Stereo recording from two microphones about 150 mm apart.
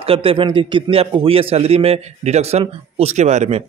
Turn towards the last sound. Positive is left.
turn(degrees=-45)  # may be behind; listen again after turning